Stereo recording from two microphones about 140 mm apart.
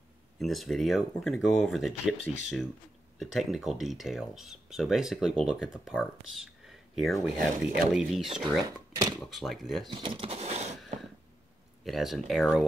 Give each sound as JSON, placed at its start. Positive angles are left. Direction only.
{"t": 0.4, "sound": "speech", "side_deg": 0}
{"t": 8.6, "sound": "speech", "side_deg": -25}
{"t": 9.2, "sound": "speech", "side_deg": 0}
{"t": 9.8, "sound": "a sound", "side_deg": -35}
{"t": 11.8, "sound": "speech", "side_deg": 0}